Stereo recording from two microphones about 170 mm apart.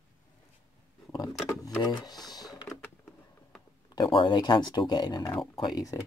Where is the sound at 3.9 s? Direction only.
25° left (ahead or behind).